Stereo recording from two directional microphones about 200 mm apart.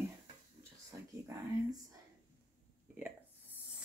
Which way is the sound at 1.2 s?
15° right (ahead or behind).